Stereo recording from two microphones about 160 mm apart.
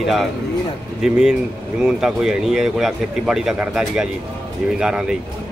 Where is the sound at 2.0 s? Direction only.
5° right (ahead or behind).